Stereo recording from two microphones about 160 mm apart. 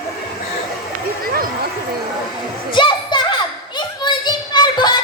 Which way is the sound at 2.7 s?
30° left (ahead or behind).